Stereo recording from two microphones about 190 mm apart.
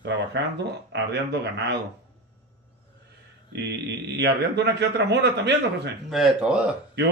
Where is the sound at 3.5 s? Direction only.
65° right (ahead or behind).